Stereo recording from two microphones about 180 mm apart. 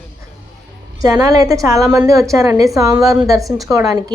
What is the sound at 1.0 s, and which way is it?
A woman's voice, 20° right (ahead or behind).